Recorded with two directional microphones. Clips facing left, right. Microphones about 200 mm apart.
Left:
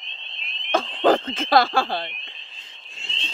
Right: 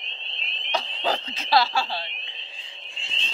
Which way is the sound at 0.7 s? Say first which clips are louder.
Left 9 dB; 50° left (ahead or behind).